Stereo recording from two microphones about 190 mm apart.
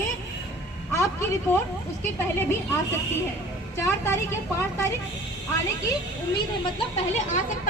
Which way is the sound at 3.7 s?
15° left (ahead or behind).